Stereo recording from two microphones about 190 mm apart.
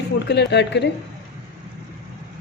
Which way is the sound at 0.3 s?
65° left (ahead or behind).